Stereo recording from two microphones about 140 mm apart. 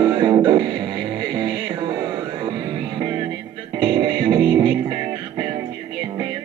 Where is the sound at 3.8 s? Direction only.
35° right (ahead or behind).